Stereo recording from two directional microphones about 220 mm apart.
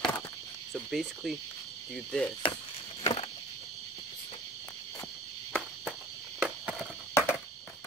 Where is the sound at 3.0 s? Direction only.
30° left (ahead or behind).